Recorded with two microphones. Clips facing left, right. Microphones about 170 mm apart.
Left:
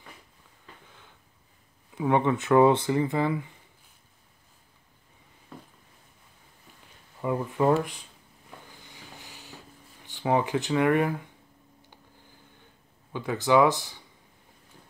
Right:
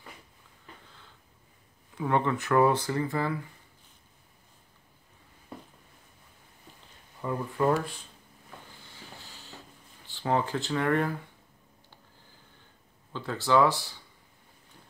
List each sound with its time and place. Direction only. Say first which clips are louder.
2.0 s speech: left 3 dB; 15° left (ahead or behind)
7.2 s speech: left 3 dB; 20° left (ahead or behind)
8.8 s vehicle: left 1 dB; 15° left (ahead or behind)
10.0 s speech: left 3 dB; 15° left (ahead or behind)
13.1 s speech: left 3 dB; 15° left (ahead or behind)